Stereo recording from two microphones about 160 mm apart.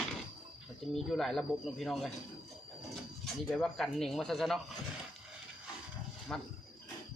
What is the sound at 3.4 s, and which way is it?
A man's voice, 10° left (ahead or behind).